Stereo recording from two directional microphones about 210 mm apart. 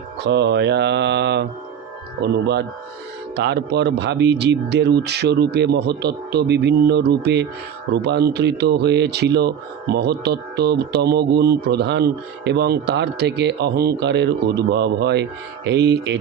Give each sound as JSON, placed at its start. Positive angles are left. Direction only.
{"t": 0.3, "sound": "mantra", "side_deg": -55}
{"t": 2.2, "sound": "speech", "side_deg": -55}